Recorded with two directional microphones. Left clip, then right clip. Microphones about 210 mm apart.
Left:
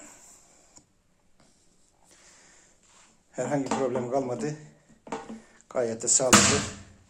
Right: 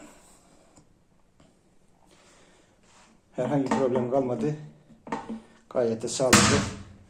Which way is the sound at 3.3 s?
15° left (ahead or behind).